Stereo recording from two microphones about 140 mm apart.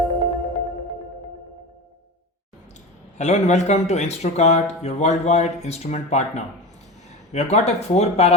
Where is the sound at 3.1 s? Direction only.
55° left (ahead or behind).